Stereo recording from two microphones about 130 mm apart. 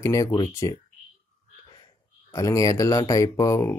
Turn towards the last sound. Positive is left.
turn(degrees=25)  # may be behind; listen again after turning